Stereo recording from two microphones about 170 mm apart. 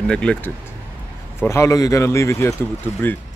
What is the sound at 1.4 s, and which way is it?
Speech, 15° left (ahead or behind).